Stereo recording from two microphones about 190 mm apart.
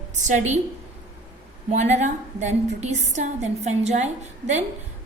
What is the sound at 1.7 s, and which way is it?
A woman's voice, 40° right (ahead or behind).